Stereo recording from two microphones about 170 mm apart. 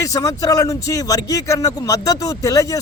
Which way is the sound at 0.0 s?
20° left (ahead or behind).